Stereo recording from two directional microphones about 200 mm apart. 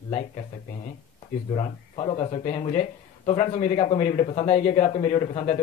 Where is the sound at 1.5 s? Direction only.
30° left (ahead or behind).